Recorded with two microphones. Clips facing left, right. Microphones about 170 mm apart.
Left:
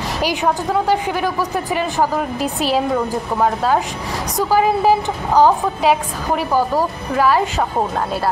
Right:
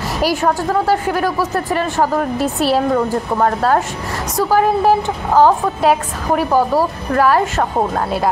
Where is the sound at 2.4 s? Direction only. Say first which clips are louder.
Right 2 dB; 40° right (ahead or behind).